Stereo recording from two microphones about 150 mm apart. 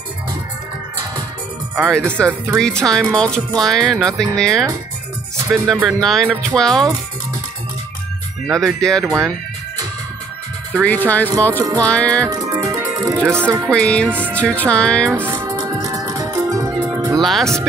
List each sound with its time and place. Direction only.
1.9 s speech: 5° left (ahead or behind)
5.4 s speech: 20° right (ahead or behind)
5.8 s speech: centre (ahead or behind)
8.5 s speech: centre (ahead or behind)
9.0 s speech: 20° right (ahead or behind)
10.8 s speech: 10° left (ahead or behind)
12.3 s music: 25° right (ahead or behind)
13.3 s speech: 15° right (ahead or behind)
13.7 s speech: 5° left (ahead or behind)
15.2 s music: 20° right (ahead or behind)
17.2 s speech: centre (ahead or behind)